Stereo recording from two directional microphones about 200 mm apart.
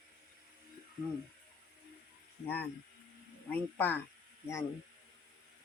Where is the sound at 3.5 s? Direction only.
10° left (ahead or behind).